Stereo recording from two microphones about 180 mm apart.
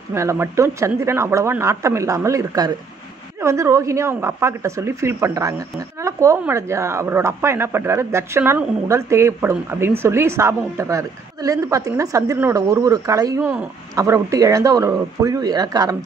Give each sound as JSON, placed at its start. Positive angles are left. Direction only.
{"t": 0.1, "sound": "speech", "side_deg": -15}